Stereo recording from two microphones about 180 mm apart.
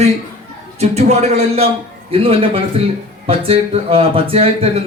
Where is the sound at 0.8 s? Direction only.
40° right (ahead or behind).